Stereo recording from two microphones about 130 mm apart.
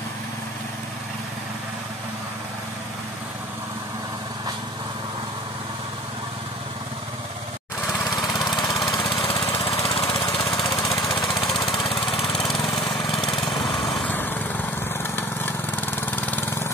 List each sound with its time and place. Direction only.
8.3 s lawn mower: 30° left (ahead or behind)
12.8 s lawn mower: 35° left (ahead or behind)
13.7 s lawn mower: centre (ahead or behind)
14.1 s lawn mower: 15° left (ahead or behind)